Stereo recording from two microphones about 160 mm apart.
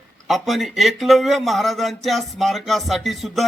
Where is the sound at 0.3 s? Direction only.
Centre (ahead or behind).